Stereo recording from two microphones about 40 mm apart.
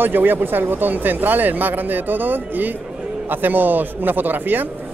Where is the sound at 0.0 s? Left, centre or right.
Right.